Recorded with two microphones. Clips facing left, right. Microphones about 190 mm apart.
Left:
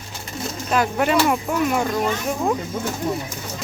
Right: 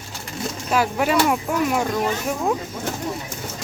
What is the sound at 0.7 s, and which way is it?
Speech, 5° right (ahead or behind).